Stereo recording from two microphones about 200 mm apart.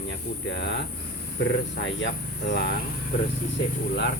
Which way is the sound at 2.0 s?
55° left (ahead or behind).